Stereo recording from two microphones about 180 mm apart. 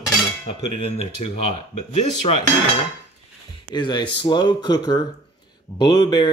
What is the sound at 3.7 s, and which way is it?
A man's voice, 25° left (ahead or behind).